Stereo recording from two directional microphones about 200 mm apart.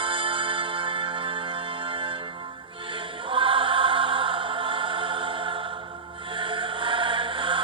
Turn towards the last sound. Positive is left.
turn(degrees=-25)  # may be behind; listen again after turning